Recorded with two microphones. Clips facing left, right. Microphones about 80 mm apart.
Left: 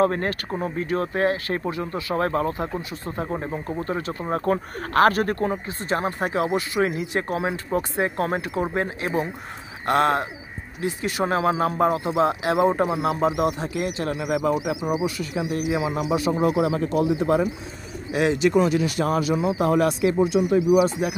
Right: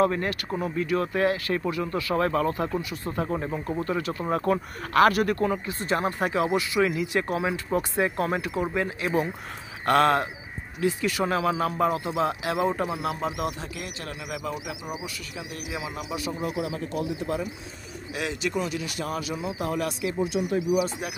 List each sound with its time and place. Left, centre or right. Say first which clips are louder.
0.0 s speech: left 2 dB; left
15.3 s speech: left 10 dB; left
18.1 s speech: left 10 dB; left
19.3 s speech: left 9 dB; left
21.0 s speech: left 8 dB; centre